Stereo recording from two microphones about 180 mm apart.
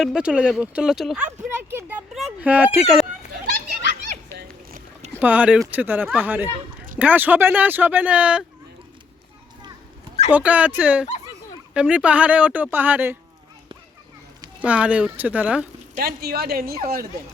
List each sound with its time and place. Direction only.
0.0 s a child's voice: 5° right (ahead or behind)
5.2 s speech: 10° right (ahead or behind)
10.3 s speech: 10° right (ahead or behind)
14.6 s speech: 5° right (ahead or behind)
16.0 s speech: 60° right (ahead or behind)